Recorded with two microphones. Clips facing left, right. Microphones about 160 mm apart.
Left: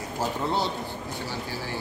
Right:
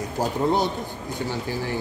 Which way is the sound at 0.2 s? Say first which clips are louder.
Right 5 dB; 15° right (ahead or behind).